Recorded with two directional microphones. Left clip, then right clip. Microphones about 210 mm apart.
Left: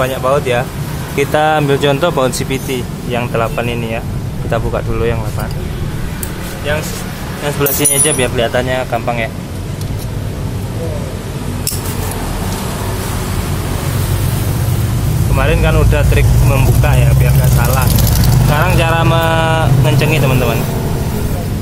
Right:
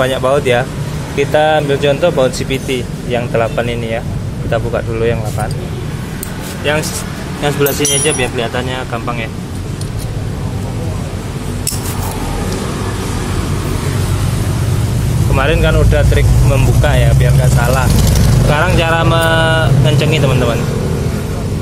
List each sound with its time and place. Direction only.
0.0 s speech: 15° right (ahead or behind)
1.1 s speech: 5° left (ahead or behind)
2.7 s speech: centre (ahead or behind)
7.8 s speech: 10° left (ahead or behind)
15.3 s speech: 15° right (ahead or behind)
15.7 s speech: centre (ahead or behind)
16.9 s speech: 15° right (ahead or behind)